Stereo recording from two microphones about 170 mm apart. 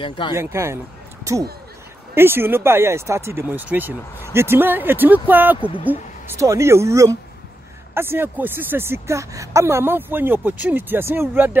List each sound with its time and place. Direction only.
0.0 s speech: 30° left (ahead or behind)
0.4 s speech: 15° right (ahead or behind)
2.1 s speech: 15° right (ahead or behind)
5.6 s speech: 30° left (ahead or behind)
5.9 s speech: 15° right (ahead or behind)